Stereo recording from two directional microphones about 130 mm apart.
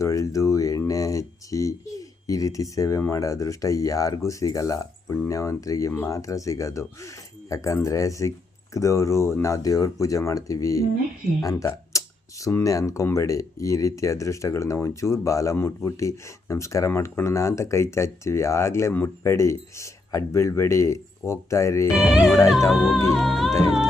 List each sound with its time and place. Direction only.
0.0 s speech: 25° left (ahead or behind)
21.9 s speech: 5° right (ahead or behind)